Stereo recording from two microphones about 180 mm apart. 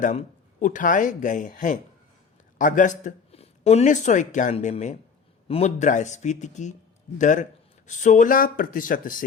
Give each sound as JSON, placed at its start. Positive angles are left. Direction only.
{"t": 0.0, "sound": "speech", "side_deg": 45}